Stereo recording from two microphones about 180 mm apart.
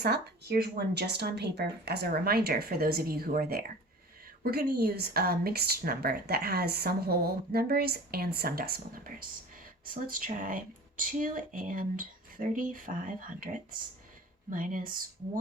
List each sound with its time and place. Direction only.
0.0 s speech: 60° right (ahead or behind)